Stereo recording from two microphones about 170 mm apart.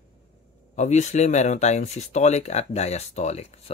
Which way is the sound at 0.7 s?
45° left (ahead or behind).